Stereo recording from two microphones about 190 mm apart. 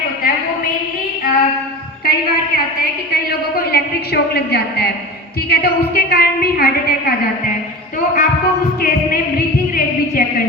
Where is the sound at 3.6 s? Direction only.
55° left (ahead or behind).